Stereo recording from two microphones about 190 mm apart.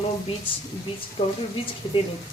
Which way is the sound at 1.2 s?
25° left (ahead or behind).